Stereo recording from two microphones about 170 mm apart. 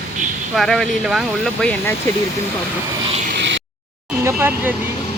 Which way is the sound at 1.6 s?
10° left (ahead or behind).